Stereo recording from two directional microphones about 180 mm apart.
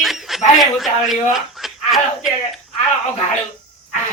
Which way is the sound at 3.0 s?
40° left (ahead or behind).